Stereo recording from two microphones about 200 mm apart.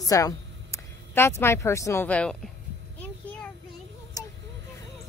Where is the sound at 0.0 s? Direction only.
15° left (ahead or behind).